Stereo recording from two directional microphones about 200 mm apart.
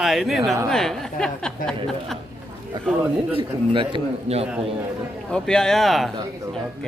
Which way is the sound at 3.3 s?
25° right (ahead or behind).